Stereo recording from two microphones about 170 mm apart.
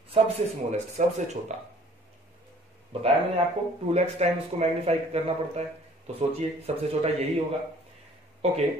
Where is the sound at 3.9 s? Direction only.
40° right (ahead or behind).